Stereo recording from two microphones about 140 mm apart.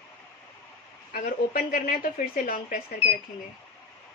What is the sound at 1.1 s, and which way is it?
Speech, 85° left.